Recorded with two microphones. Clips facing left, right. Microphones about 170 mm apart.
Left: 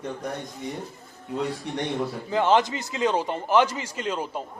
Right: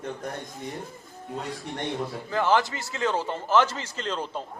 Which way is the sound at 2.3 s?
20° left (ahead or behind).